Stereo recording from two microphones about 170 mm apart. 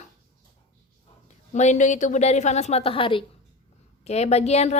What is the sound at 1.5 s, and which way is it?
A woman's voice, 45° left (ahead or behind).